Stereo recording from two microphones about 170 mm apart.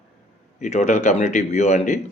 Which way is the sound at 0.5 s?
45° left (ahead or behind).